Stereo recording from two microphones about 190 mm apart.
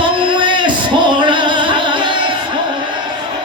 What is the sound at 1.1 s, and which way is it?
Music, 25° right (ahead or behind).